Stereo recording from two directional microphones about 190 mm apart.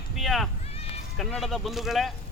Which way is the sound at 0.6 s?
30° left (ahead or behind).